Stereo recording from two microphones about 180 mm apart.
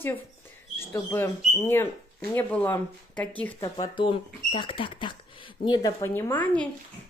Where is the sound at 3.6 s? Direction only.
25° left (ahead or behind); by 6.6 s 10° left (ahead or behind).